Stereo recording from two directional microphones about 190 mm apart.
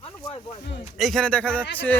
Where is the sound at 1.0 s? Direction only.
Centre (ahead or behind).